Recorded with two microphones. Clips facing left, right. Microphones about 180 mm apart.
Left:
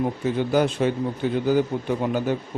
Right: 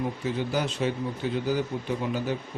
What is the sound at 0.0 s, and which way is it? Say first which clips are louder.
Speech: left 5 dB; 55° left (ahead or behind).